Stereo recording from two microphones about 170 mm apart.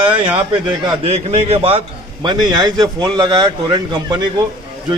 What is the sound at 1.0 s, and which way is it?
A man's voice, 35° right (ahead or behind).